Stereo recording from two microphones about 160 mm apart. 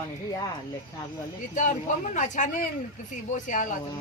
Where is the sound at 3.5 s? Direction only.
55° left (ahead or behind).